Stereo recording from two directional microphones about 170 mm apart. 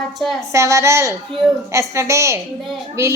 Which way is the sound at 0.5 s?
15° right (ahead or behind).